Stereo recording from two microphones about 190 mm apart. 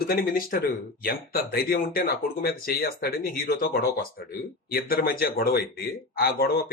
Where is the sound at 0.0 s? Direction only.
50° left (ahead or behind).